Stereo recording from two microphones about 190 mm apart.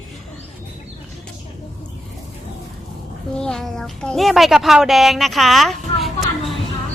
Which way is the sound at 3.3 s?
5° left (ahead or behind).